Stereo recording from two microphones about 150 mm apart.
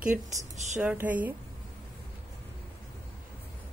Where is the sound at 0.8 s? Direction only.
10° right (ahead or behind).